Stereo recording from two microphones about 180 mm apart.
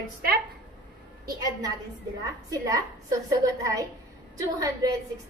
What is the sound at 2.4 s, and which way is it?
A woman's voice, 20° right (ahead or behind).